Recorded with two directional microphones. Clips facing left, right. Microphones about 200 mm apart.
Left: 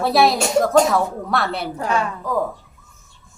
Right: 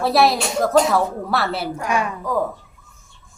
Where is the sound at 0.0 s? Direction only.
Centre (ahead or behind).